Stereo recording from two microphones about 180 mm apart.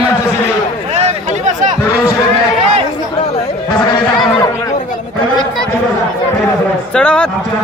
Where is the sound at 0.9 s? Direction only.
40° right (ahead or behind).